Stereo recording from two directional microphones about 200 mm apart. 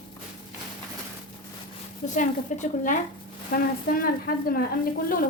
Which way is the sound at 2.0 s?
40° left (ahead or behind).